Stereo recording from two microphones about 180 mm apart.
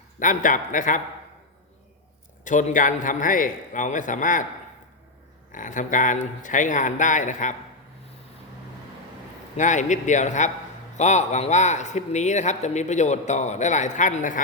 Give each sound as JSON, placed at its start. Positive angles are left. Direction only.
{"t": 0.2, "sound": "a man's voice", "side_deg": 45}
{"t": 2.4, "sound": "a man's voice", "side_deg": 45}
{"t": 5.5, "sound": "a man's voice", "side_deg": 45}
{"t": 9.6, "sound": "a man's voice", "side_deg": 40}